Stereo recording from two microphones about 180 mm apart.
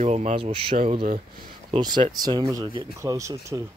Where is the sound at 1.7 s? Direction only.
25° right (ahead or behind).